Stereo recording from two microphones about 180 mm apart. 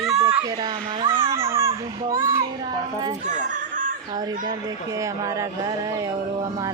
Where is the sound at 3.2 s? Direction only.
45° right (ahead or behind).